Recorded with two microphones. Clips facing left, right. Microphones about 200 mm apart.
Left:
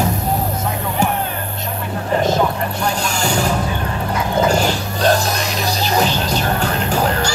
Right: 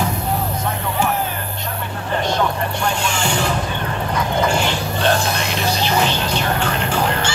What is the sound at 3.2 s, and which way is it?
Vehicle, 40° left (ahead or behind).